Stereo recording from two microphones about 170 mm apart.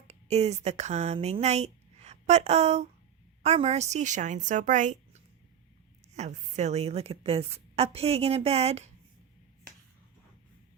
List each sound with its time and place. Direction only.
0.1 s a woman's voice: 40° right (ahead or behind)